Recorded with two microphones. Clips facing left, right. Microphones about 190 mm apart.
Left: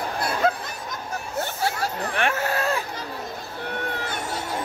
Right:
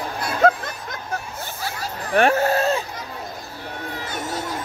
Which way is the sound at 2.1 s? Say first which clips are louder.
Right 10 dB; 35° right (ahead or behind).